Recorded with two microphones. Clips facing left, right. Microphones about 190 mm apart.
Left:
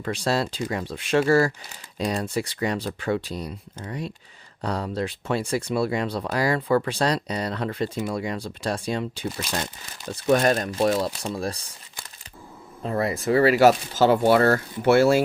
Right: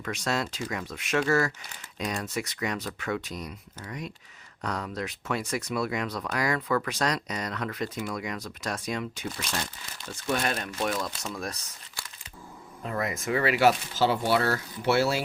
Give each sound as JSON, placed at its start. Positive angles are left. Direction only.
{"t": 0.0, "sound": "speech", "side_deg": 30}
{"t": 10.2, "sound": "speech", "side_deg": 45}
{"t": 12.8, "sound": "speech", "side_deg": 30}